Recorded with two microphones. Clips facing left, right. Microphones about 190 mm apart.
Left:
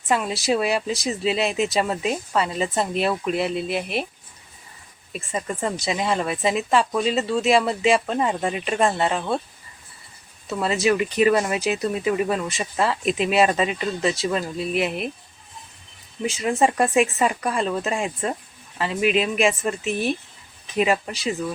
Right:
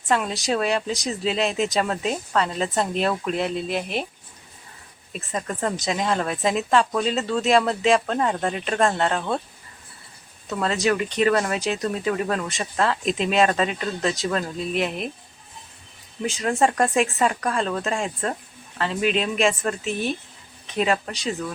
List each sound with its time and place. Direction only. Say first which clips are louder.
0.1 s speech: left 1 dB; 5° left (ahead or behind)
5.1 s speech: left 1 dB; centre (ahead or behind)
10.4 s speech: left 1 dB; 5° left (ahead or behind)
16.2 s speech: left 1 dB; centre (ahead or behind)